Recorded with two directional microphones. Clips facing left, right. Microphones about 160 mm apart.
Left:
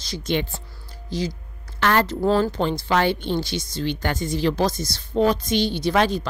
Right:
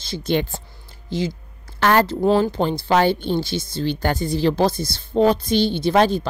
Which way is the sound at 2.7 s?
35° right (ahead or behind).